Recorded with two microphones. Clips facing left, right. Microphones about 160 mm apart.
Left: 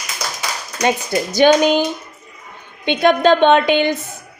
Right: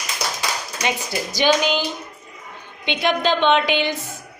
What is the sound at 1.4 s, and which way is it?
A woman's voice, 50° left (ahead or behind).